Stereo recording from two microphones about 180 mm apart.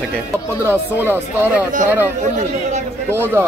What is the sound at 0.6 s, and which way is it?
Speech, 10° right (ahead or behind).